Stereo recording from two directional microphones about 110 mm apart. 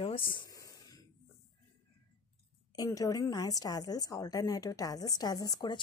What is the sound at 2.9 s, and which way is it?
A woman's voice, 35° left (ahead or behind).